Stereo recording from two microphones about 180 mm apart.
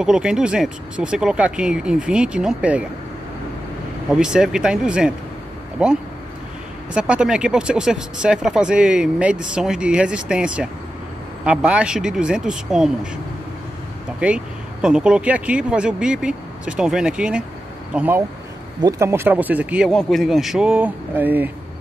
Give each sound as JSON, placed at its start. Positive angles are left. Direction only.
{"t": 0.0, "sound": "speech", "side_deg": -5}
{"t": 4.1, "sound": "speech", "side_deg": -5}
{"t": 14.2, "sound": "speech", "side_deg": -5}